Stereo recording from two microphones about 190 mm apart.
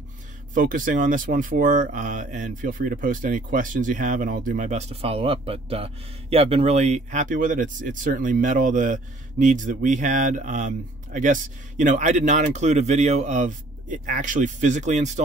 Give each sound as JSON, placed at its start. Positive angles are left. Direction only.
{"t": 0.6, "sound": "speech", "side_deg": -45}